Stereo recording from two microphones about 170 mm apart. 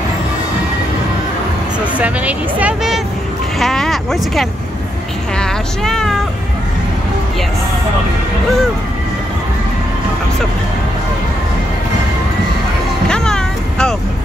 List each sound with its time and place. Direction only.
2.0 s speech: 10° right (ahead or behind)
13.1 s vehicle: 5° left (ahead or behind)